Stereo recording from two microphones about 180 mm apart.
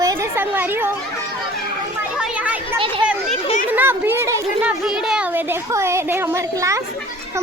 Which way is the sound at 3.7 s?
10° right (ahead or behind).